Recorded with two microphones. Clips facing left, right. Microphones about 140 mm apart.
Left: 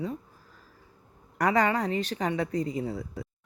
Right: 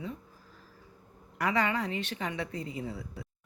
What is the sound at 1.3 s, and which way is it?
Speech, 40° left (ahead or behind).